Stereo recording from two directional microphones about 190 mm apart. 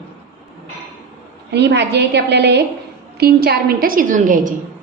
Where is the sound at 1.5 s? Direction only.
65° right (ahead or behind); by 4.5 s 45° right (ahead or behind).